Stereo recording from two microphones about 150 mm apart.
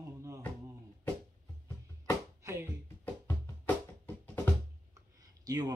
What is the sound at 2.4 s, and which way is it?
Music, 20° right (ahead or behind).